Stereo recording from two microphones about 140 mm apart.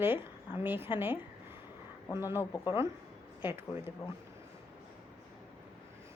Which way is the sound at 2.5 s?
30° left (ahead or behind).